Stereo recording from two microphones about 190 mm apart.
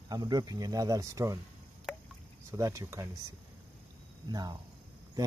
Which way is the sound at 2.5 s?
15° right (ahead or behind).